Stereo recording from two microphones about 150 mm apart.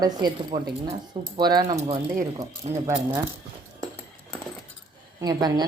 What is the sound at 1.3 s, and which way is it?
A woman's voice, 25° right (ahead or behind).